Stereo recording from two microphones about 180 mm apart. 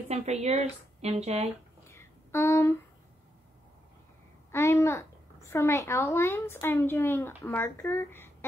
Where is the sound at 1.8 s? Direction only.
15° left (ahead or behind).